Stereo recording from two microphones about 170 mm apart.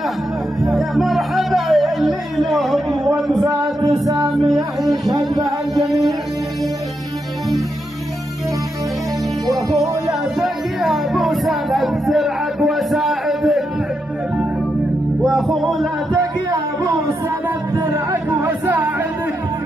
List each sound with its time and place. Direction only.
0.6 s music: centre (ahead or behind)
4.0 s music: 20° right (ahead or behind)
10.4 s music: centre (ahead or behind)
15.2 s music: centre (ahead or behind)
17.7 s music: 20° right (ahead or behind)